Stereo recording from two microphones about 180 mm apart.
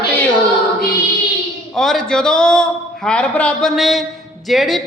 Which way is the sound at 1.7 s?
Centre (ahead or behind).